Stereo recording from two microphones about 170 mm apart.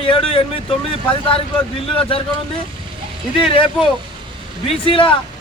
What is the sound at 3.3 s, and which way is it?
A man's voice, 30° left (ahead or behind).